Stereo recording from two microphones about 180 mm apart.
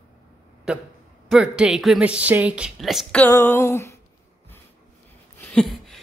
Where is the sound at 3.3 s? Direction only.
15° left (ahead or behind).